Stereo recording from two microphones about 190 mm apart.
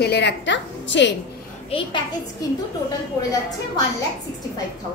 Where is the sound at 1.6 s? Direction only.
30° left (ahead or behind).